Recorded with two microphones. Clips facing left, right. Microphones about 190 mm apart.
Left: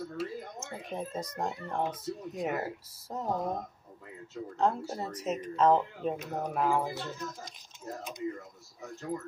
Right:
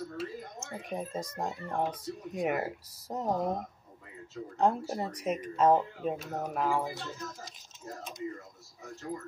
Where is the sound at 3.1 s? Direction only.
20° right (ahead or behind).